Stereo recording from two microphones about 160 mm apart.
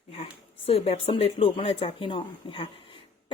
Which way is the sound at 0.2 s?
40° left (ahead or behind).